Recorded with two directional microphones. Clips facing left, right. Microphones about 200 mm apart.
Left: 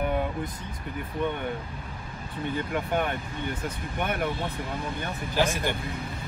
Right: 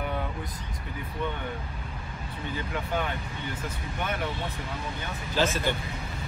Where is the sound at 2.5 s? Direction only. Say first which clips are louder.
Left 3 dB; 50° left (ahead or behind).